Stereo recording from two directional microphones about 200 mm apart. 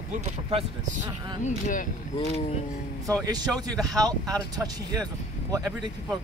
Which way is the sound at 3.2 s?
20° right (ahead or behind).